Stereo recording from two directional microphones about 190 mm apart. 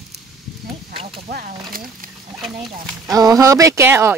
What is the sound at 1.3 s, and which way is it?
Speech, 50° right (ahead or behind).